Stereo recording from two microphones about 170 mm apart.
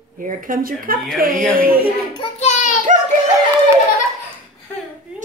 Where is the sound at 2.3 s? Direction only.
45° left (ahead or behind).